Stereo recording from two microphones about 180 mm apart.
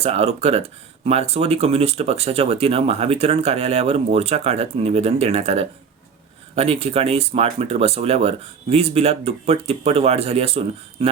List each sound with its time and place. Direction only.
0.0 s speech: 35° right (ahead or behind)